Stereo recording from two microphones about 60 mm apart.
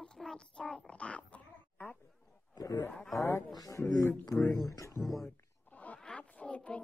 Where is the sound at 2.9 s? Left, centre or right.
Centre.